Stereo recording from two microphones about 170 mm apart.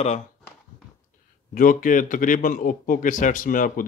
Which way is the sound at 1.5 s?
55° left (ahead or behind).